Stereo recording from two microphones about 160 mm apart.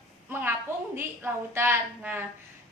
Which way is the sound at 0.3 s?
15° right (ahead or behind).